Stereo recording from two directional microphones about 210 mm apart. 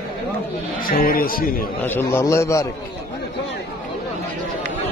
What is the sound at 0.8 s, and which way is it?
Speech, 45° left (ahead or behind).